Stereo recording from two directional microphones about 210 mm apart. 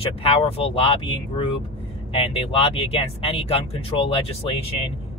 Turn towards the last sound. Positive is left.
turn(degrees=25)  # may be behind; listen again after turning